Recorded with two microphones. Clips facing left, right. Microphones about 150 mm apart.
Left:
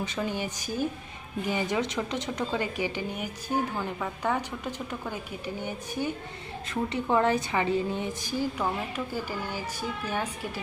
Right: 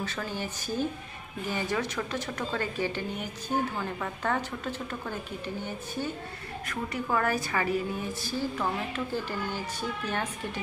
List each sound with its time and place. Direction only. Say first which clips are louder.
0.0 s a woman's voice: left 3 dB; 15° left (ahead or behind)